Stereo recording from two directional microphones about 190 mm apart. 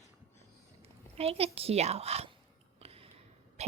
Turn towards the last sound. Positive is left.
turn(degrees=-35)  # may be behind; listen again after turning